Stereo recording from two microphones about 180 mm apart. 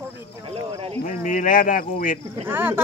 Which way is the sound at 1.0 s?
45° left (ahead or behind).